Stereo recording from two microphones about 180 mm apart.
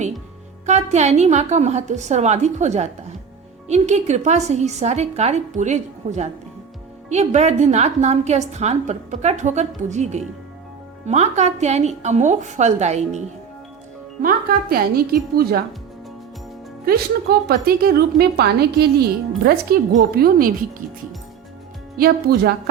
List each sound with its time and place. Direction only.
0.6 s a woman's voice: 40° right (ahead or behind)
14.2 s speech: 55° right (ahead or behind)
16.8 s speech: 60° right (ahead or behind)
21.9 s speech: 60° right (ahead or behind)